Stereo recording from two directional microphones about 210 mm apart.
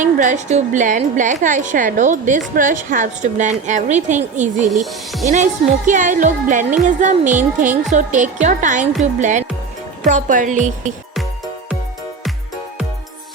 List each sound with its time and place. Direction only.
0.0 s a woman's voice: 35° right (ahead or behind)
4.7 s speech: centre (ahead or behind)
5.3 s a woman's voice: 35° right (ahead or behind)